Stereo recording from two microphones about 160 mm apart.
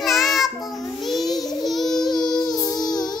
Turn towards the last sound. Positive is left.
turn(degrees=25)  # may be behind; listen again after turning